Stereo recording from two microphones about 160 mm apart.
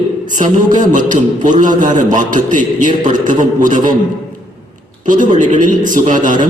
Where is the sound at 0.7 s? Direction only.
55° right (ahead or behind).